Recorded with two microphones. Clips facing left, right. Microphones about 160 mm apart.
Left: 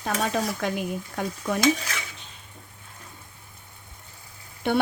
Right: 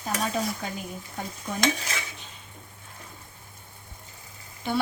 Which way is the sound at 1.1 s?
75° left (ahead or behind).